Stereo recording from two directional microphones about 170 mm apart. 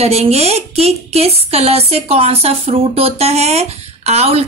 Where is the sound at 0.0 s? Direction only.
35° right (ahead or behind).